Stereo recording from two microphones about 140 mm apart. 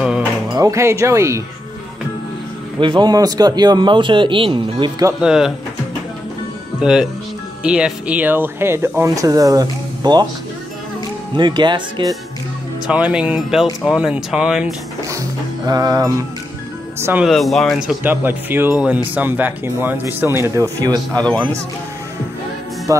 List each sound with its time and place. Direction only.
0.5 s speech: 25° right (ahead or behind)
2.8 s speech: 35° right (ahead or behind)
5.2 s speech: 5° right (ahead or behind)
6.8 s speech: 5° right (ahead or behind); by 10.2 s 30° right (ahead or behind)
11.3 s speech: 35° right (ahead or behind)
12.8 s speech: 10° right (ahead or behind)
15.6 s speech: 25° right (ahead or behind)
17.0 s speech: 15° right (ahead or behind)
17.3 s speech: centre (ahead or behind)
18.0 s speech: 15° right (ahead or behind)
20.8 s speech: 30° right (ahead or behind)
22.9 s speech: 20° right (ahead or behind)